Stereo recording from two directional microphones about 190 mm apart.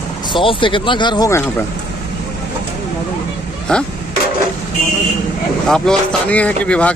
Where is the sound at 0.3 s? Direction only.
25° left (ahead or behind).